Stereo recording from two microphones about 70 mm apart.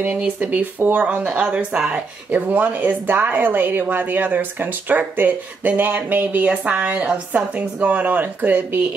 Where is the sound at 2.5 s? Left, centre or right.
Right.